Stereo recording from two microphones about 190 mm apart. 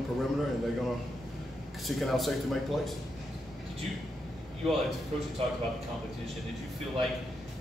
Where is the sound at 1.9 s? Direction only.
Centre (ahead or behind).